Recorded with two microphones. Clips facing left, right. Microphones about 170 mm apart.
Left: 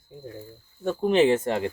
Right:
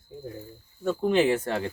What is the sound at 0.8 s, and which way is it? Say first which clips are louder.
Speech: left 2 dB; 20° left (ahead or behind).